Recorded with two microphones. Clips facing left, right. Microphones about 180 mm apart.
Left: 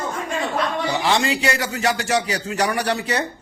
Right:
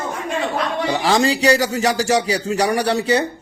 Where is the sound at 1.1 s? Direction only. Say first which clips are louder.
Right 7 dB; 35° right (ahead or behind).